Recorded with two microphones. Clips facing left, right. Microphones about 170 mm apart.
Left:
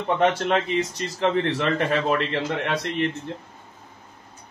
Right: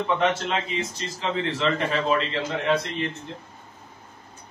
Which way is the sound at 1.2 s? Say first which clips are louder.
Left 3 dB; 55° left (ahead or behind).